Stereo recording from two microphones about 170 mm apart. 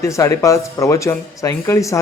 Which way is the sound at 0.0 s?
20° left (ahead or behind).